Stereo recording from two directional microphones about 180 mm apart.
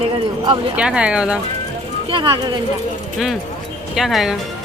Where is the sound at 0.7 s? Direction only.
5° right (ahead or behind).